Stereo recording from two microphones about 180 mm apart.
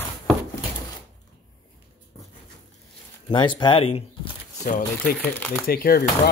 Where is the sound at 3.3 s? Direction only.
25° left (ahead or behind).